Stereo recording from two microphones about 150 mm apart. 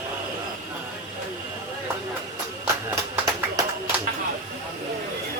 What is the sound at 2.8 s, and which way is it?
Run, 25° right (ahead or behind).